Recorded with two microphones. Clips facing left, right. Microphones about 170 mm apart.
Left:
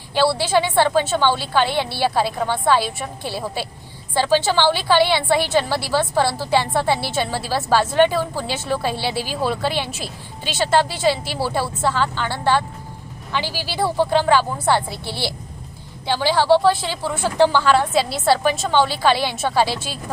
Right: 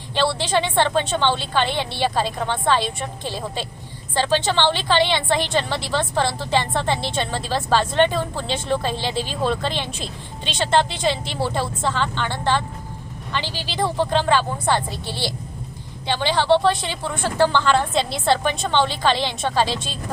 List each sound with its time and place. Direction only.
0.1 s a woman's voice: 10° left (ahead or behind)